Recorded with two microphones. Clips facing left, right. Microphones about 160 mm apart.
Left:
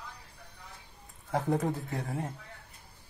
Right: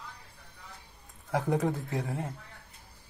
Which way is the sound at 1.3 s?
Centre (ahead or behind).